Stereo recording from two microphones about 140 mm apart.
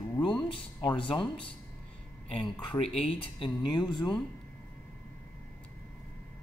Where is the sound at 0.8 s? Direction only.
35° left (ahead or behind).